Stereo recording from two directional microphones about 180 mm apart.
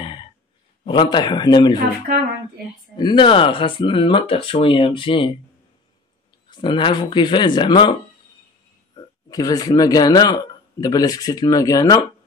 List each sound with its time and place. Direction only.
0.0 s a sound: 30° left (ahead or behind)
0.8 s speech: 25° left (ahead or behind)
3.0 s speech: 25° left (ahead or behind)
6.5 s speech: 25° left (ahead or behind)
8.9 s speech: 20° left (ahead or behind)